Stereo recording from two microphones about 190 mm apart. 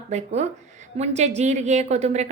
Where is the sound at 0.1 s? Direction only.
35° right (ahead or behind).